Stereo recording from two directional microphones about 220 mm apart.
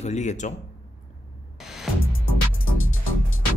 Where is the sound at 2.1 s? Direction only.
65° left (ahead or behind).